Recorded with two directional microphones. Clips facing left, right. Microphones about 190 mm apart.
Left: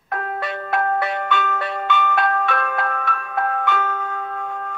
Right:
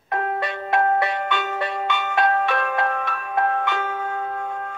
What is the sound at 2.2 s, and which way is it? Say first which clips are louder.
Music: right 1 dB; 25° right (ahead or behind).